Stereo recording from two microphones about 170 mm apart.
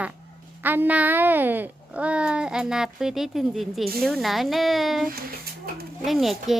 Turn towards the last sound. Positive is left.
turn(degrees=0)  # may be behind; listen again after turning